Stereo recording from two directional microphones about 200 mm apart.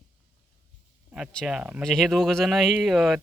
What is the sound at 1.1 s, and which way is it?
Speech, centre (ahead or behind).